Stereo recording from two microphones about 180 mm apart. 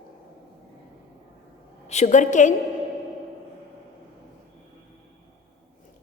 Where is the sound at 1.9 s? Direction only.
40° left (ahead or behind).